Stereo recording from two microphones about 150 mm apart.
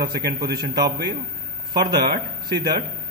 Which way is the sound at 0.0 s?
90° right.